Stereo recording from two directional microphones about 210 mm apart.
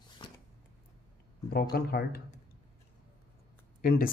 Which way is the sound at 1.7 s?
45° left (ahead or behind).